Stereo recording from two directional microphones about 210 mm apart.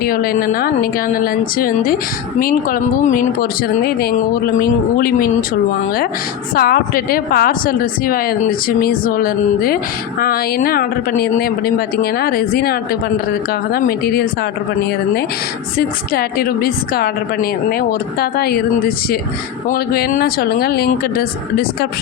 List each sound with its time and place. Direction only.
0.0 s a woman's voice: 45° left (ahead or behind)
6.5 s a woman's voice: 45° left (ahead or behind)
16.1 s a woman's voice: 45° left (ahead or behind)